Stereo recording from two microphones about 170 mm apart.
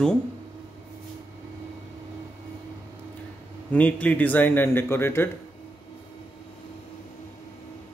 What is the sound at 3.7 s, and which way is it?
A man's voice, 10° left (ahead or behind).